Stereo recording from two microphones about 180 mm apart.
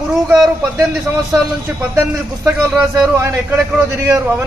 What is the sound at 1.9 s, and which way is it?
Speech, 15° right (ahead or behind).